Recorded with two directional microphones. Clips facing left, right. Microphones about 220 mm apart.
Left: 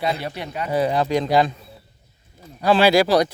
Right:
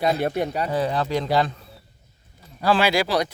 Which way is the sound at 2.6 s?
30° left (ahead or behind).